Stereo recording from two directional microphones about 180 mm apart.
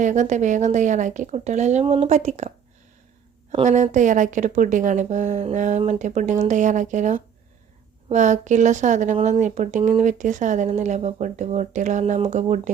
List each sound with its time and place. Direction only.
0.0 s speech: 40° right (ahead or behind)
3.5 s speech: 40° right (ahead or behind)